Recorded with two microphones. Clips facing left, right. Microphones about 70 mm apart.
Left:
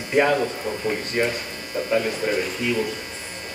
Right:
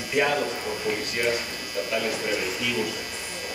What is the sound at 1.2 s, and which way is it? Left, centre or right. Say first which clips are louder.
Speech: left 2 dB; left.